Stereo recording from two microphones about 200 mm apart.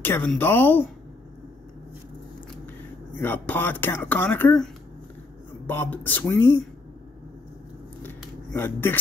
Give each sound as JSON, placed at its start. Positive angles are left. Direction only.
{"t": 0.0, "sound": "speech", "side_deg": 10}
{"t": 3.2, "sound": "speech", "side_deg": 10}
{"t": 5.7, "sound": "speech", "side_deg": 10}
{"t": 8.5, "sound": "speech", "side_deg": 10}